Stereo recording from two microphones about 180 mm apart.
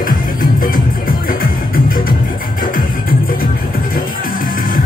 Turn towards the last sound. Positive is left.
turn(degrees=50)  # may be behind; listen again after turning